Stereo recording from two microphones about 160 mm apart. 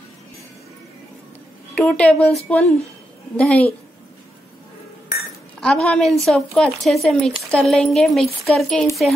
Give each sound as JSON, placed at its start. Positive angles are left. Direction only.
{"t": 1.8, "sound": "speech", "side_deg": 5}
{"t": 5.6, "sound": "speech", "side_deg": 5}